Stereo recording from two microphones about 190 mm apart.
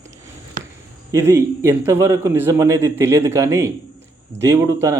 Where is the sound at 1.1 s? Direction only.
15° right (ahead or behind).